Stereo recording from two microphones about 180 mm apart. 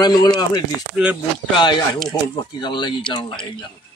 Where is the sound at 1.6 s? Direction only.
25° left (ahead or behind).